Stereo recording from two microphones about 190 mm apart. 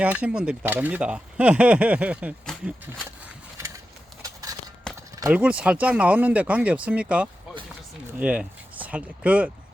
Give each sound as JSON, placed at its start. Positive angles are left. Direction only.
{"t": 0.0, "sound": "speech", "side_deg": -5}
{"t": 4.2, "sound": "a sound", "side_deg": -20}
{"t": 4.9, "sound": "clip-clop", "side_deg": 5}
{"t": 5.3, "sound": "speech", "side_deg": -5}